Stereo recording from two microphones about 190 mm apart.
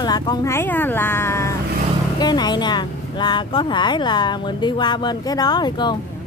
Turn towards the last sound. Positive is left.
turn(degrees=20)  # may be behind; listen again after turning